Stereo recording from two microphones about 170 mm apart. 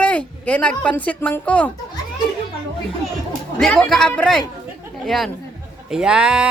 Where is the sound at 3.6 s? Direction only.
5° left (ahead or behind).